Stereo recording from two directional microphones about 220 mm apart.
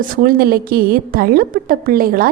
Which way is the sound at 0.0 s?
40° right (ahead or behind).